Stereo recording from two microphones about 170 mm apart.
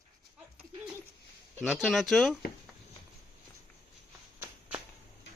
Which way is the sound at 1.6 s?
Centre (ahead or behind).